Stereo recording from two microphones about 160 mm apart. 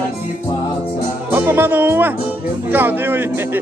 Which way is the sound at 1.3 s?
15° right (ahead or behind).